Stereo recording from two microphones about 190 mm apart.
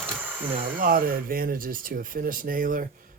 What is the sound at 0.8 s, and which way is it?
A man's voice, 50° right (ahead or behind).